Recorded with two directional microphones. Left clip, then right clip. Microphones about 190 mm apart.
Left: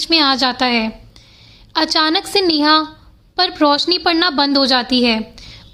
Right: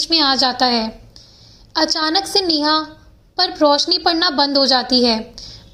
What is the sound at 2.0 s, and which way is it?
A woman's voice, 20° left (ahead or behind).